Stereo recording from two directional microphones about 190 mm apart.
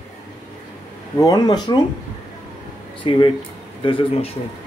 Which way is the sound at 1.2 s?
20° left (ahead or behind).